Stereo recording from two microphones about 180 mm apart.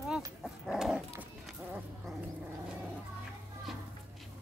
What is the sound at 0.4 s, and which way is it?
Dog, centre (ahead or behind).